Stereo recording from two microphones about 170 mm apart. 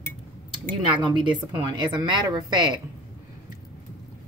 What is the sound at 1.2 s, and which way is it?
Speech, 25° right (ahead or behind).